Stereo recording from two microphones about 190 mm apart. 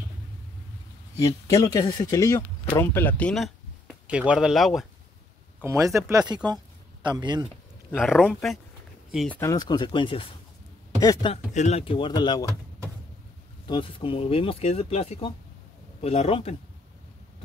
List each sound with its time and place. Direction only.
1.2 s speech: 20° left (ahead or behind); by 4.8 s centre (ahead or behind)
5.6 s speech: 15° right (ahead or behind)
7.9 s speech: centre (ahead or behind)
9.4 s speech: 20° left (ahead or behind)
11.5 s speech: 35° left (ahead or behind)
13.7 s speech: 25° left (ahead or behind)